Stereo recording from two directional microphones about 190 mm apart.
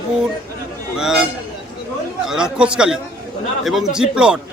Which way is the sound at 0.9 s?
5° right (ahead or behind).